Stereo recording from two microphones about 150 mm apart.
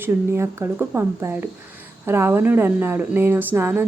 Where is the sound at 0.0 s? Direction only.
15° right (ahead or behind).